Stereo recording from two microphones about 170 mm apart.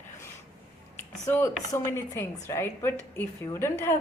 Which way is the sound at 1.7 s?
15° left (ahead or behind).